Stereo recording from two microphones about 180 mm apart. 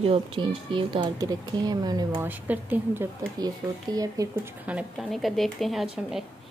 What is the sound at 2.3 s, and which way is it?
Speech, 10° right (ahead or behind).